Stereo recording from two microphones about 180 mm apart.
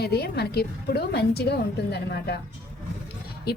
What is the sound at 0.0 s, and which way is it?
A woman's voice, 60° left (ahead or behind).